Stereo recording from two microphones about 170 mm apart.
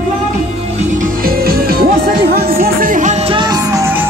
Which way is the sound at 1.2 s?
60° right (ahead or behind).